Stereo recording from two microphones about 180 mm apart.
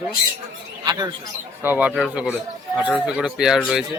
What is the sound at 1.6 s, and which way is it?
Speech, 10° right (ahead or behind).